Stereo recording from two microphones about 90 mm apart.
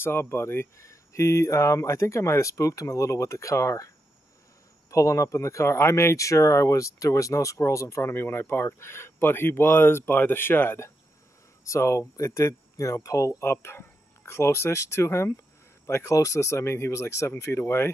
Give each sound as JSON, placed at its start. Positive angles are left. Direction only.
{"t": 0.0, "sound": "speech", "side_deg": 25}
{"t": 4.9, "sound": "speech", "side_deg": 35}